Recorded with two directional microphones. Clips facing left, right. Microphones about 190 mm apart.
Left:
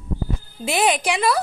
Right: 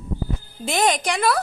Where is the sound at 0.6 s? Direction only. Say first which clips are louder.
Left 1 dB; 5° left (ahead or behind).